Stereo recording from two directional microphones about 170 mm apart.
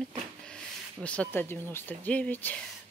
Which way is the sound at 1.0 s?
10° left (ahead or behind).